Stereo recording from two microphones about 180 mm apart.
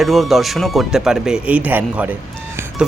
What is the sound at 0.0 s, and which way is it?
Speech, centre (ahead or behind).